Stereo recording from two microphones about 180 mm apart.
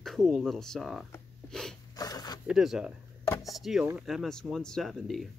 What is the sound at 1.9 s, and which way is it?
Zipper, 20° left (ahead or behind).